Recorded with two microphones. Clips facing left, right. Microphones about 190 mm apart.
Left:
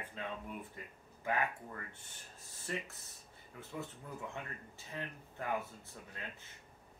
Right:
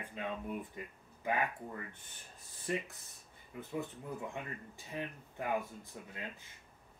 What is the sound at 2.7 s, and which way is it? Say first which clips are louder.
Speech: right 4 dB; 15° right (ahead or behind).